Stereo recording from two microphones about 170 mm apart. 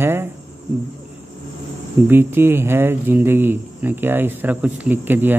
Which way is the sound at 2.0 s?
15° right (ahead or behind).